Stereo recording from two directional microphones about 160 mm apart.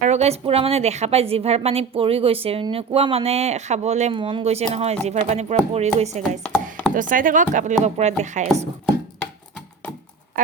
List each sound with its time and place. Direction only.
0.0 s a woman's voice: 45° right (ahead or behind)
6.4 s chopping: 5° left (ahead or behind)
6.9 s speech: 55° right (ahead or behind)